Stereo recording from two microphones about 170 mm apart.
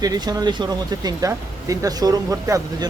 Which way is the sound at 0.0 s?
20° right (ahead or behind).